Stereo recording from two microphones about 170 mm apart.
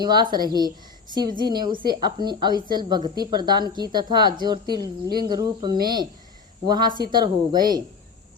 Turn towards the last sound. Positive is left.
turn(degrees=-25)  # may be behind; listen again after turning